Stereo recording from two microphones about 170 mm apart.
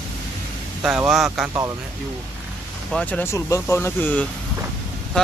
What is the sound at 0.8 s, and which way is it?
Speech, 5° right (ahead or behind).